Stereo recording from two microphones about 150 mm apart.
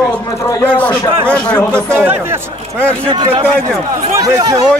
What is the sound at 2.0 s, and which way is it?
Speech, 10° right (ahead or behind).